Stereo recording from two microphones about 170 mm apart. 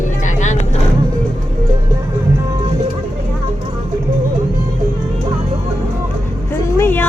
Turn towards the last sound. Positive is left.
turn(degrees=10)  # may be behind; listen again after turning